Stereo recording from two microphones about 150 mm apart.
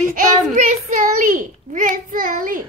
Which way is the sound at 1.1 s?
65° right (ahead or behind).